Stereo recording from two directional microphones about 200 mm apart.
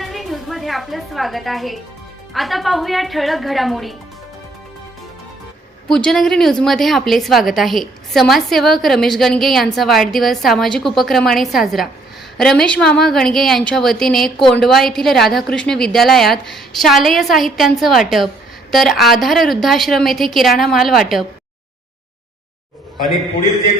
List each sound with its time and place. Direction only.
0.0 s a woman's voice: centre (ahead or behind)
5.9 s a woman's voice: centre (ahead or behind)